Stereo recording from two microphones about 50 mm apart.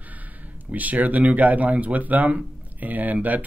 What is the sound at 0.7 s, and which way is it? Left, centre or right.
Speech, right.